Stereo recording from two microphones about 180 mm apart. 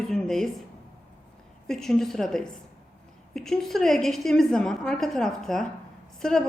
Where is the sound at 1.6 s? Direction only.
5° left (ahead or behind).